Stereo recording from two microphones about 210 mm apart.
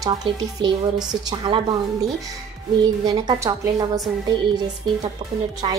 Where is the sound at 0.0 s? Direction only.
20° right (ahead or behind).